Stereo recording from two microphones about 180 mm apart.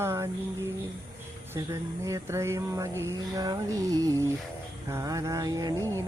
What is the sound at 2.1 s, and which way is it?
Speech, 15° right (ahead or behind).